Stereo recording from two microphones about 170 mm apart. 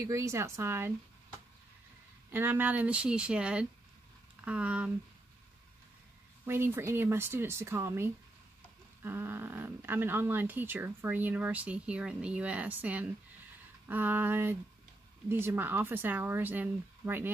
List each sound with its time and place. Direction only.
0.0 s speech: 20° right (ahead or behind)
2.3 s speech: 10° right (ahead or behind)
6.4 s speech: 15° right (ahead or behind)